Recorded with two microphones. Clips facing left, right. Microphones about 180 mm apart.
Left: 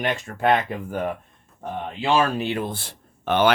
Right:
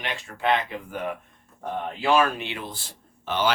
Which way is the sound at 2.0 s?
30° left (ahead or behind).